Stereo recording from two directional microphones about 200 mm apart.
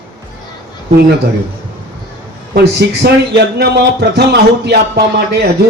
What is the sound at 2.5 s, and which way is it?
A man's voice, 55° right (ahead or behind).